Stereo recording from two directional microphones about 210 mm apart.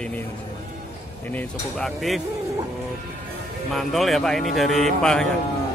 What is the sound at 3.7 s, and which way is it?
A man's voice, centre (ahead or behind).